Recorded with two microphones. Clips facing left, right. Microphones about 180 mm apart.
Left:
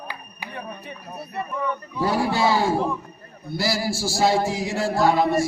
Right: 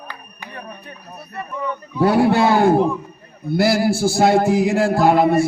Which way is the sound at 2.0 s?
60° right (ahead or behind).